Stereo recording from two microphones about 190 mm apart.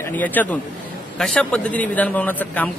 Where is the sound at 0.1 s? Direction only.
10° left (ahead or behind).